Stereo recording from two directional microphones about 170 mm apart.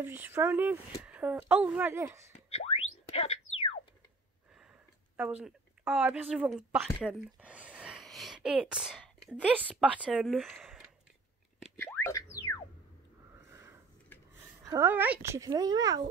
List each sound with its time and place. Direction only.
0.0 s speech: 15° right (ahead or behind)
2.3 s boing: 35° left (ahead or behind)
5.1 s speech: 10° right (ahead or behind)
11.8 s boing: 15° left (ahead or behind)
13.5 s a sound: 15° right (ahead or behind)
14.6 s speech: 20° right (ahead or behind)